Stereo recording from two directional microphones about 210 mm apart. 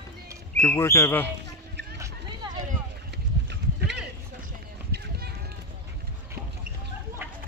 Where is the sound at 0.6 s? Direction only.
10° left (ahead or behind).